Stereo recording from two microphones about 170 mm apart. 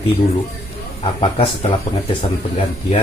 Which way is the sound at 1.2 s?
30° left (ahead or behind).